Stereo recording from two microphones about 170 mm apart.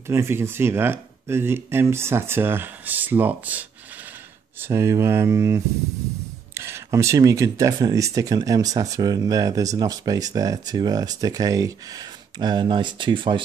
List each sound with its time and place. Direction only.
0.1 s speech: 15° right (ahead or behind)